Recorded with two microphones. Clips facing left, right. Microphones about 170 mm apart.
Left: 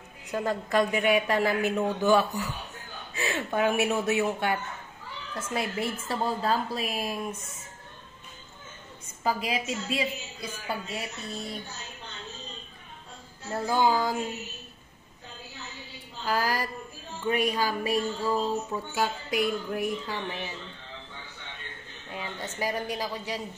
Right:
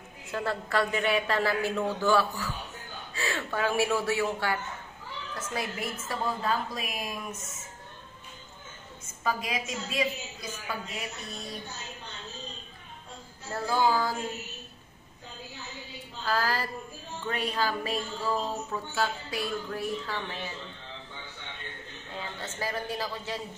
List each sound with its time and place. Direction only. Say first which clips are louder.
0.2 s a woman's voice: left 3 dB; 15° left (ahead or behind); by 7.3 s 30° left (ahead or behind)
9.0 s a woman's voice: left 2 dB; 30° left (ahead or behind)
13.5 s speech: left 2 dB; 20° left (ahead or behind)
16.3 s speech: left 1 dB; 15° left (ahead or behind)
22.1 s a sound: left 2 dB; 10° left (ahead or behind)
22.6 s speech: left 2 dB; 15° left (ahead or behind)